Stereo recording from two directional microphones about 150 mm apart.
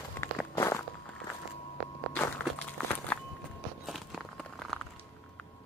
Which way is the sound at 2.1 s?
15° left (ahead or behind).